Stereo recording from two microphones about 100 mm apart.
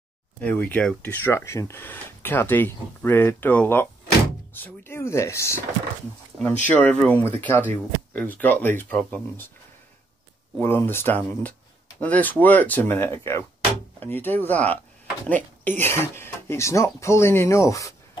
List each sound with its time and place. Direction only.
0.4 s speech: 15° left (ahead or behind)
6.4 s speech: 15° left (ahead or behind)
10.6 s speech: 25° left (ahead or behind)